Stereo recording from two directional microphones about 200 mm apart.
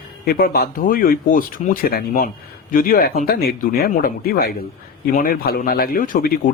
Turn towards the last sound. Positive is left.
turn(degrees=45)  # may be behind; listen again after turning